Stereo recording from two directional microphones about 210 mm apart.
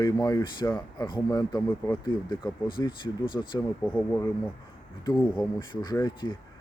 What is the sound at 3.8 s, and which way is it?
Speech, 10° left (ahead or behind).